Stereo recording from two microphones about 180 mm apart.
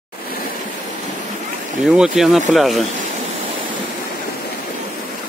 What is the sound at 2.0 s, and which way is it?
Speech, centre (ahead or behind).